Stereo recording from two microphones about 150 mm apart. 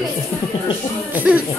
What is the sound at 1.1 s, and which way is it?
Speech, 10° right (ahead or behind).